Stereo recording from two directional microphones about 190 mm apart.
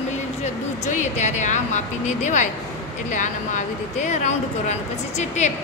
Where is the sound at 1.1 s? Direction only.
40° left (ahead or behind).